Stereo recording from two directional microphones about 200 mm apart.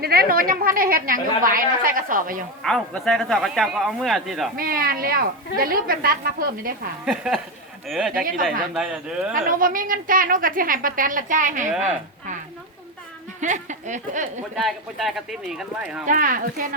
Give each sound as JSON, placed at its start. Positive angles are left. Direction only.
{"t": 0.0, "sound": "a woman's voice", "side_deg": -50}
{"t": 2.6, "sound": "speech", "side_deg": 0}
{"t": 4.5, "sound": "a woman's voice", "side_deg": -45}
{"t": 7.0, "sound": "speech", "side_deg": 0}
{"t": 9.3, "sound": "a woman's voice", "side_deg": -45}
{"t": 13.4, "sound": "speech", "side_deg": -40}
{"t": 14.5, "sound": "speech", "side_deg": 0}
{"t": 16.0, "sound": "a woman's voice", "side_deg": -40}